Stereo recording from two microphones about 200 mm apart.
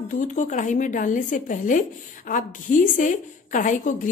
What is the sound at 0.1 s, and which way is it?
Speech, 40° left (ahead or behind).